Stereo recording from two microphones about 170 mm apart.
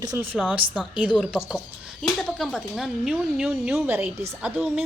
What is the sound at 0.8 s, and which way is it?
A woman's voice, 5° right (ahead or behind).